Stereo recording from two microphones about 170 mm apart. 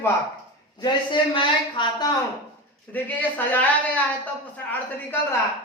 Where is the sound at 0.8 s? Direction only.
30° left (ahead or behind).